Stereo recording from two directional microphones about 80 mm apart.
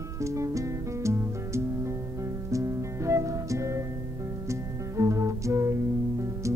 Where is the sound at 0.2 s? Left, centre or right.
Right.